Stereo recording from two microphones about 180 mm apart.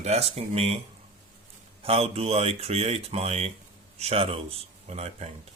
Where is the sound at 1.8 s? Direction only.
35° right (ahead or behind).